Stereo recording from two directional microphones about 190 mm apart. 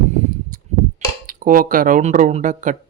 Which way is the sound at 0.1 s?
40° right (ahead or behind).